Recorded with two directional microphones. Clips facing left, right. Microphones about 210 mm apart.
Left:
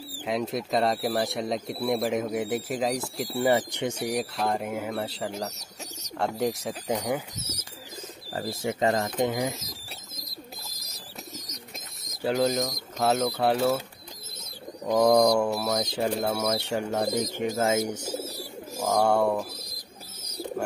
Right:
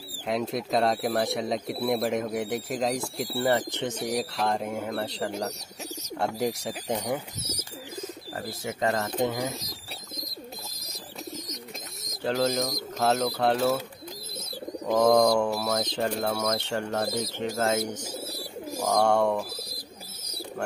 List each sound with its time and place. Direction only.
0.1 s speech: centre (ahead or behind)
8.5 s speech: 25° left (ahead or behind)
12.0 s speech: centre (ahead or behind)
14.9 s speech: centre (ahead or behind)
18.2 s bird: 10° right (ahead or behind)
18.8 s speech: 5° left (ahead or behind)